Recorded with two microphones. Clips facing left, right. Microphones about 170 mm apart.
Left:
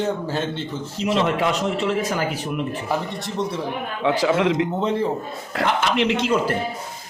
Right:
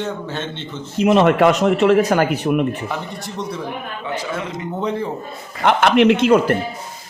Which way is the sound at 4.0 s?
90° left.